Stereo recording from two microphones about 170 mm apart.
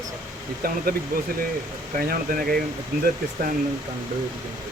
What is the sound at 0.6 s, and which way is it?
Speech, 60° right (ahead or behind).